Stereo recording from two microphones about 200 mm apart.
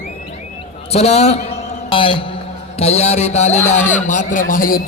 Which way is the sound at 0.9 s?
30° left (ahead or behind).